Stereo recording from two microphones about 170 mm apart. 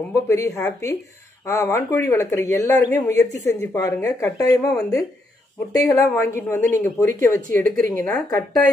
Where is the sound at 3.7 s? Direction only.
20° left (ahead or behind).